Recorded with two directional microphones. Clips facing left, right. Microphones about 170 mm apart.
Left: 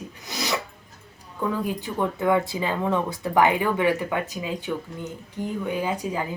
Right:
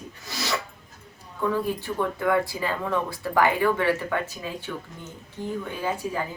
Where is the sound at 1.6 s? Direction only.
20° left (ahead or behind).